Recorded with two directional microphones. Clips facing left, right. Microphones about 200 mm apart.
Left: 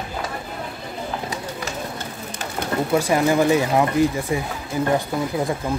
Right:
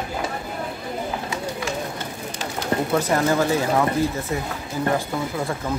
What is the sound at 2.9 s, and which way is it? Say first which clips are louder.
Speech: left 3 dB; 10° left (ahead or behind).